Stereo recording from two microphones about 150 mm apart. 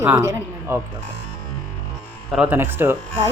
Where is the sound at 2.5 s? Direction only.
15° right (ahead or behind).